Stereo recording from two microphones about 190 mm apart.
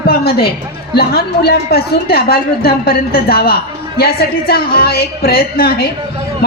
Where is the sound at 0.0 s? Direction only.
55° left (ahead or behind).